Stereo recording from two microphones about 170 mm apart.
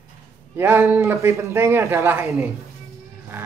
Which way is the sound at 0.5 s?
10° right (ahead or behind).